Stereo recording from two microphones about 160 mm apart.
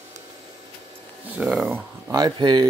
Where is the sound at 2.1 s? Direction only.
25° right (ahead or behind).